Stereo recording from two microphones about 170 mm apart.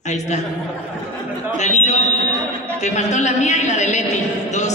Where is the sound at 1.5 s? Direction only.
45° left (ahead or behind).